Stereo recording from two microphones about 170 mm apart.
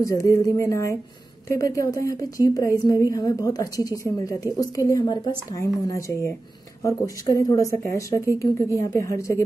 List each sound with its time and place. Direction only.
0.0 s a woman's voice: 20° left (ahead or behind)